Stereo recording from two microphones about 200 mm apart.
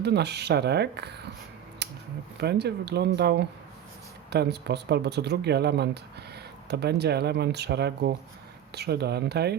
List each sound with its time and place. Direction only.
0.0 s speech: 55° right (ahead or behind)
1.8 s a sound: 55° right (ahead or behind)
2.4 s speech: 55° right (ahead or behind)